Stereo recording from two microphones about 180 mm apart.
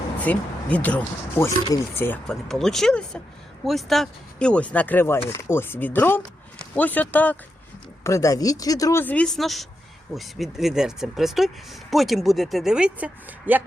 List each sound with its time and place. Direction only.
0.2 s speech: 10° left (ahead or behind); by 13.6 s 10° right (ahead or behind)